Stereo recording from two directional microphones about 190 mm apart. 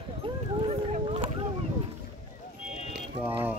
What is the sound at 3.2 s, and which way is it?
Mechanisms, 10° right (ahead or behind).